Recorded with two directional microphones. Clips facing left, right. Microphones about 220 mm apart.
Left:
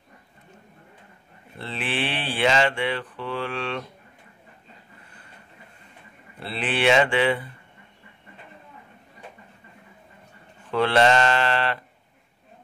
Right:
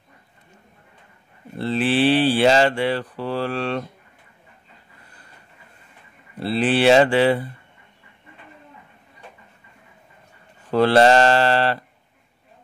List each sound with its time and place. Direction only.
1.6 s speech: 35° right (ahead or behind)
6.4 s speech: 35° right (ahead or behind)
10.7 s speech: 40° right (ahead or behind)